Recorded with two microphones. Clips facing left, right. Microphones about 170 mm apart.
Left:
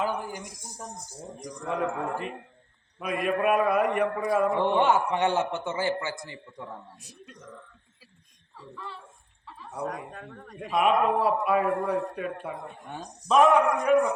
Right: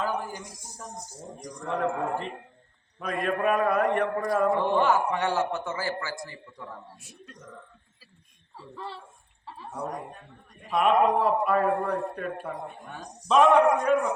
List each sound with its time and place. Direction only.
0.0 s a man's voice: 15° left (ahead or behind)
4.6 s a man's voice: 20° left (ahead or behind)
8.7 s speech: 30° right (ahead or behind)
9.8 s a man's voice: 90° left
10.7 s a man's voice: 5° left (ahead or behind)